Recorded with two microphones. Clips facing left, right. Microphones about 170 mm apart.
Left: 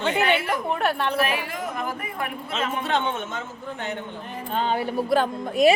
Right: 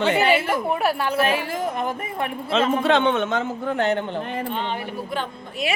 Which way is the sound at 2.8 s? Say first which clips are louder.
Right 7 dB; 80° right.